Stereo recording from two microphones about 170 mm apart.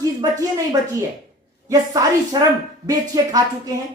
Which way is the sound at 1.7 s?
20° right (ahead or behind).